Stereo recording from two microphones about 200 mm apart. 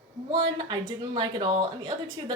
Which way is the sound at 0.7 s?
25° right (ahead or behind).